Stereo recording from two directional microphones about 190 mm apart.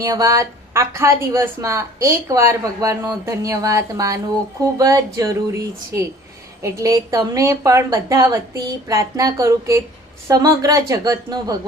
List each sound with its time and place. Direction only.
0.0 s speech: 15° right (ahead or behind)